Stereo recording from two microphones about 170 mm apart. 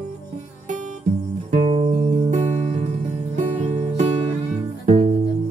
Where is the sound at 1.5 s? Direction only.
35° right (ahead or behind).